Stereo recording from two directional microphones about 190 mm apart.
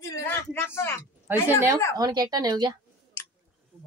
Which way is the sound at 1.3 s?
10° right (ahead or behind).